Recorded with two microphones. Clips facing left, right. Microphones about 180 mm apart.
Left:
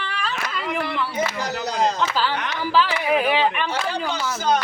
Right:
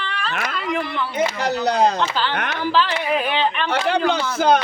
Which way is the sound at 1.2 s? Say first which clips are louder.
Right 8 dB; 60° right (ahead or behind).